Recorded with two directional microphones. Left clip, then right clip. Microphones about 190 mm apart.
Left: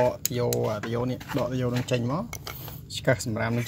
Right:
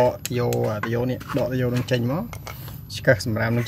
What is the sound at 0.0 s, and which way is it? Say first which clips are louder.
Speech: right 4 dB; 15° right (ahead or behind).